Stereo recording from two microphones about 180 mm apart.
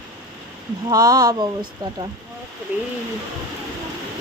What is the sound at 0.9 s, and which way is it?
Speech, 20° right (ahead or behind).